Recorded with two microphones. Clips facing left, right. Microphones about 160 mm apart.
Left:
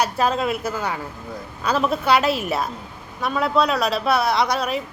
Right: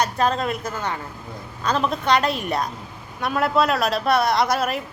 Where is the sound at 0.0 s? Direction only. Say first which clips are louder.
Left 1 dB; 5° left (ahead or behind).